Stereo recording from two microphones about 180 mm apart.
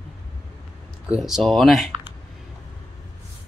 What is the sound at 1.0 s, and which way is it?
Speech, 5° right (ahead or behind).